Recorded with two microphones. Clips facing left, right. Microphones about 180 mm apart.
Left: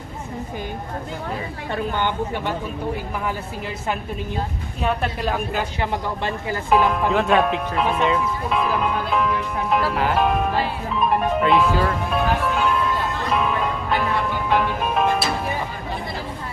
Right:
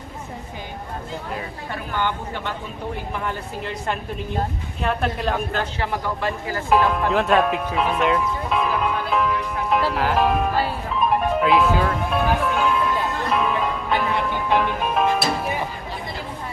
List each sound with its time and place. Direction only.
2.0 s speech: 20° left (ahead or behind)
3.3 s speech: 5° left (ahead or behind)
11.0 s music: centre (ahead or behind)